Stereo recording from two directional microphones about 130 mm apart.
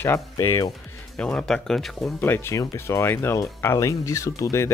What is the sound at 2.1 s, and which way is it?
Speech, 15° left (ahead or behind).